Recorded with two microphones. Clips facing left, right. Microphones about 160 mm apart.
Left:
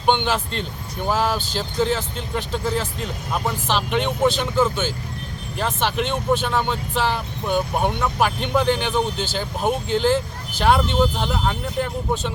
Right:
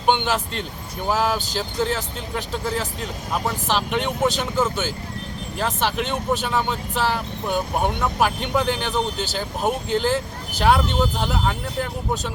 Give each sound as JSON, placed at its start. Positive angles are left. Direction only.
{"t": 0.1, "sound": "speech", "side_deg": -5}